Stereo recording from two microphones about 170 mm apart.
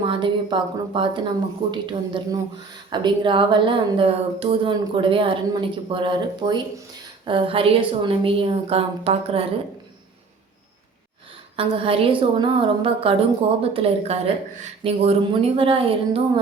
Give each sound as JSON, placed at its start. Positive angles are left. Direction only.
{"t": 0.0, "sound": "a woman's voice", "side_deg": -30}
{"t": 11.5, "sound": "a woman's voice", "side_deg": -35}